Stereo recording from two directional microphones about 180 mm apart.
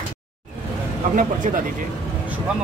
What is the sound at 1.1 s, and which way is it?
Speech, 45° right (ahead or behind).